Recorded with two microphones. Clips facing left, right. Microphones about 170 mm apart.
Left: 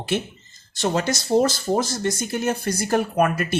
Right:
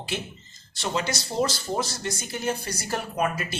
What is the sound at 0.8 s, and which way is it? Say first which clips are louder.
Speech: left 6 dB; 50° left (ahead or behind).